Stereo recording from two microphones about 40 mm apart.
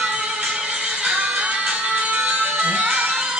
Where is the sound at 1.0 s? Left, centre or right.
Right.